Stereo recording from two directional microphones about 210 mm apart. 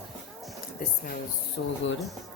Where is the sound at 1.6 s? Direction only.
50° left (ahead or behind).